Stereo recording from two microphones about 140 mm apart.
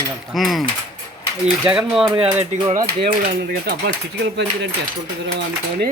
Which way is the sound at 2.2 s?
45° right (ahead or behind).